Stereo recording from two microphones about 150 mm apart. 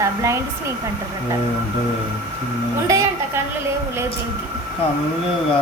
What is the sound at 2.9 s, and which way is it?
Speech, 20° right (ahead or behind).